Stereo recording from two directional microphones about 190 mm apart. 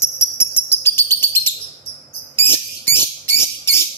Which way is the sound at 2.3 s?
10° left (ahead or behind).